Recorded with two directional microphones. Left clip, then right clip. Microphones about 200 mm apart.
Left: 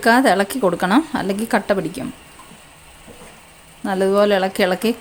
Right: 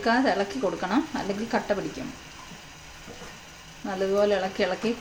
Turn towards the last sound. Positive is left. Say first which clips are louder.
# left 8 dB
turn(degrees=55)  # may be behind; listen again after turning